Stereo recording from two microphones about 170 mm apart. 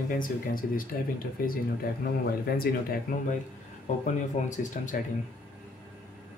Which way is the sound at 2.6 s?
60° left (ahead or behind).